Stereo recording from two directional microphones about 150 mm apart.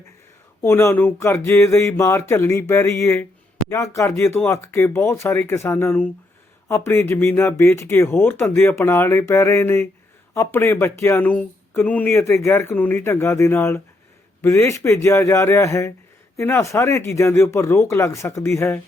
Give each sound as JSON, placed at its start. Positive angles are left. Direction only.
{"t": 0.6, "sound": "speech", "side_deg": 15}